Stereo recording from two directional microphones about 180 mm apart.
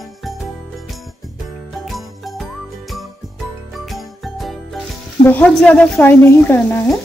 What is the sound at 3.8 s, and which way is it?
Jingle, centre (ahead or behind).